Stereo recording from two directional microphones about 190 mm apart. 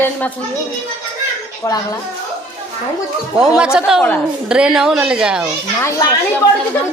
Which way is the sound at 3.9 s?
5° right (ahead or behind).